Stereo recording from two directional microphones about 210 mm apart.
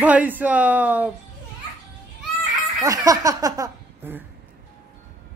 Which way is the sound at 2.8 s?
15° right (ahead or behind).